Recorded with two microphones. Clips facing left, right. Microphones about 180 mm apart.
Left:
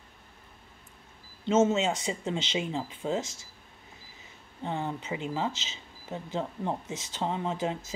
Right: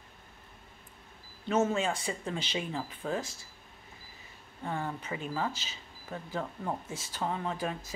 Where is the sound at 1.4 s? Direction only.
25° left (ahead or behind).